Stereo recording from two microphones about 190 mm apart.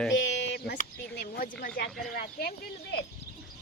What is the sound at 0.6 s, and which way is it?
Speech, 55° left (ahead or behind).